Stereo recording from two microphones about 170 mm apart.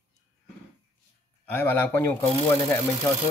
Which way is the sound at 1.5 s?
10° left (ahead or behind).